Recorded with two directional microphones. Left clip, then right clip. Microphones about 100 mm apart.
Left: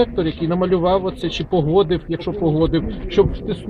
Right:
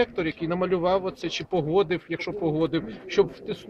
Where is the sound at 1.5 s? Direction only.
10° left (ahead or behind).